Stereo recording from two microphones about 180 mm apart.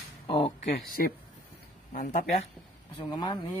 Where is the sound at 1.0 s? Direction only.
55° left (ahead or behind).